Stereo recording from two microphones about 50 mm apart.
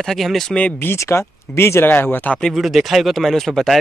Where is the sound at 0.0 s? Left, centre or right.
Centre.